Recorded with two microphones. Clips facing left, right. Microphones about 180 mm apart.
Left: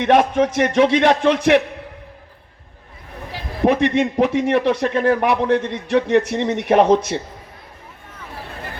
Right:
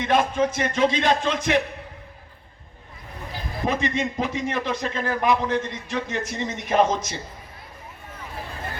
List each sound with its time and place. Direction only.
0.0 s speech: 65° left (ahead or behind)
3.6 s speech: 65° left (ahead or behind)